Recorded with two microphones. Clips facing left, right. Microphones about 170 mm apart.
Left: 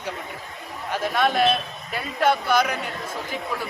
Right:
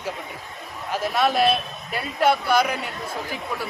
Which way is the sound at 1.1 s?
5° right (ahead or behind).